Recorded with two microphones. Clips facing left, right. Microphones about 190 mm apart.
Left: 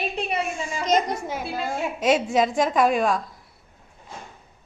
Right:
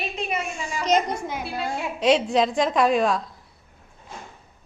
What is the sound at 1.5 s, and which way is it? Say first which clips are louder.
A woman's voice: left 1 dB; centre (ahead or behind).